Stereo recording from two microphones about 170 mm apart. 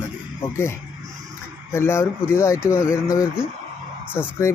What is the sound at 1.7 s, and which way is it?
Speech, 15° left (ahead or behind).